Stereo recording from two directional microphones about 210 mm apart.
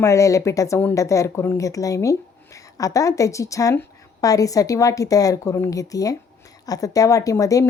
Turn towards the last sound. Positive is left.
turn(degrees=15)  # may be behind; listen again after turning